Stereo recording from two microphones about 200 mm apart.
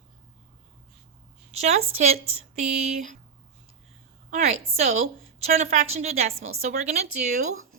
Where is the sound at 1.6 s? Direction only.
35° right (ahead or behind).